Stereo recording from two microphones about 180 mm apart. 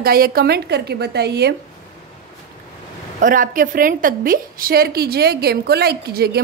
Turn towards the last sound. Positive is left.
turn(degrees=-60)  # may be behind; listen again after turning